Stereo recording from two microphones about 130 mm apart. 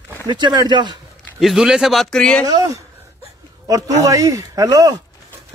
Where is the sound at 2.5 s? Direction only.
25° right (ahead or behind).